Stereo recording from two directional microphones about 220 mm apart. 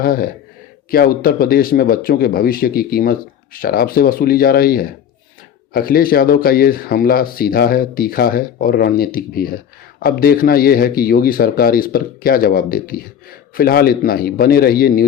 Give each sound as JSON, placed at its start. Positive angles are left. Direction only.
{"t": 0.0, "sound": "speech", "side_deg": 40}